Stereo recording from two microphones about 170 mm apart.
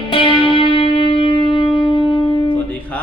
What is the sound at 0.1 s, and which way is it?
Music, 30° left (ahead or behind).